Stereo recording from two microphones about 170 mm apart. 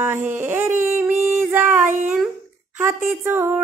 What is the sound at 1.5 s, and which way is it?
Female singing, 15° right (ahead or behind).